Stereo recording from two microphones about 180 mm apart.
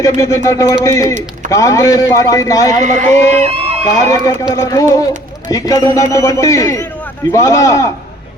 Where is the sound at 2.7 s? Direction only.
40° right (ahead or behind).